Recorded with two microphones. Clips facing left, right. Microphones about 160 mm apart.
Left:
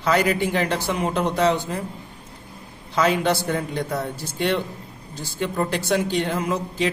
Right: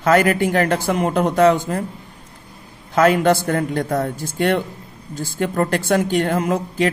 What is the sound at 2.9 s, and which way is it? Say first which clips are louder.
Speech: right 6 dB; 50° right (ahead or behind).